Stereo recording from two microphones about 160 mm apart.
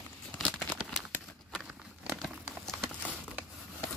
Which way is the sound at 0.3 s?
10° left (ahead or behind).